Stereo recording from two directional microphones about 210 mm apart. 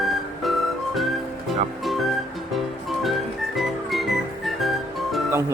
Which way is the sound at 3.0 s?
Centre (ahead or behind).